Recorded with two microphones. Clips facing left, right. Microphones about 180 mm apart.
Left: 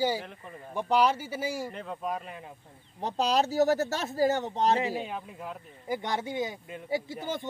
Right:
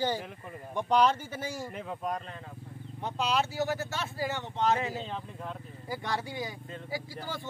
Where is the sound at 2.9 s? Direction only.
35° left (ahead or behind).